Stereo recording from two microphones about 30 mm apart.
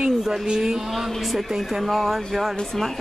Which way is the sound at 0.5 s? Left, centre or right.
Centre.